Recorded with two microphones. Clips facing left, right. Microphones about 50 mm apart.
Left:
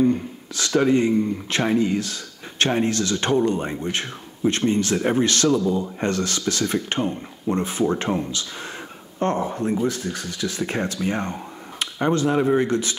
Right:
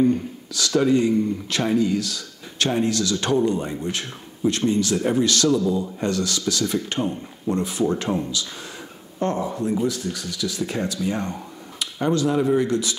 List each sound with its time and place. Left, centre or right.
0.0 s speech: left